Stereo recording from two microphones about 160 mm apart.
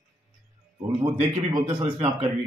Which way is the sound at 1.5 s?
30° right (ahead or behind).